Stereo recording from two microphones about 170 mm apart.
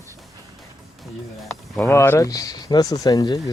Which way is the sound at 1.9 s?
15° left (ahead or behind).